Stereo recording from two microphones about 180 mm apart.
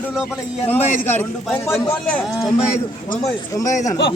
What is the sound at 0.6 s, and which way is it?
A man's voice, 10° left (ahead or behind).